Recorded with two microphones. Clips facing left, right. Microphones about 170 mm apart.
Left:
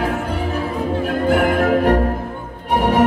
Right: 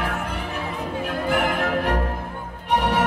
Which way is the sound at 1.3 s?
45° left (ahead or behind).